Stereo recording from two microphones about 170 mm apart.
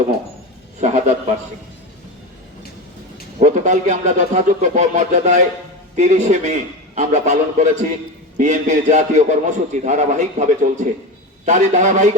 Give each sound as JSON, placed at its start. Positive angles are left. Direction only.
{"t": 0.8, "sound": "a man's voice", "side_deg": -45}
{"t": 3.4, "sound": "a man's voice", "side_deg": -45}